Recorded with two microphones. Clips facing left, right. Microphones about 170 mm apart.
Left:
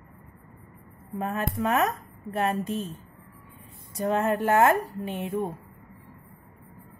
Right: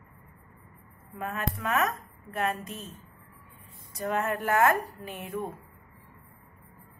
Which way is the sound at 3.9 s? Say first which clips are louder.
Left 5 dB; 30° left (ahead or behind).